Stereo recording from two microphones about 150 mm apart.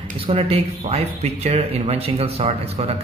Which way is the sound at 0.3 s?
40° right (ahead or behind).